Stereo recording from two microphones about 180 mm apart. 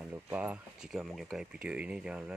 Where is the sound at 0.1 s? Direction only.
10° right (ahead or behind).